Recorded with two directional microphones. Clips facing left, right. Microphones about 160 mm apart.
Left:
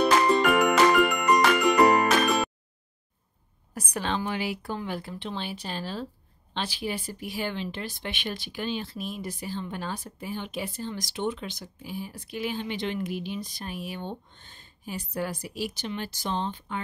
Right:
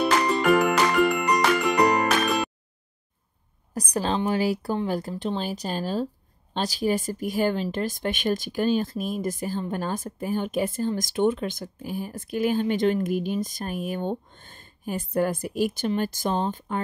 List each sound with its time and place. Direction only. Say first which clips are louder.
0.0 s music: left 1 dB; centre (ahead or behind)
3.9 s speech: right 5 dB; 35° right (ahead or behind)